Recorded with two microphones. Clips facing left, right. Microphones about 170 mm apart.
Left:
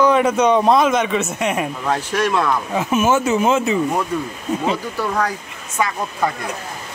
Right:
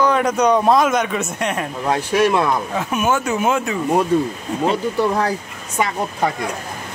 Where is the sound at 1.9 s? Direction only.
15° right (ahead or behind).